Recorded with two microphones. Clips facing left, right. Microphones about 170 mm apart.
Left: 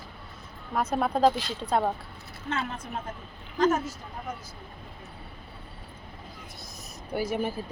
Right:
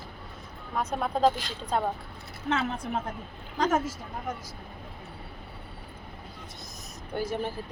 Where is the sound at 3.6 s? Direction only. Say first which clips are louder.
Left 2 dB; 90° right.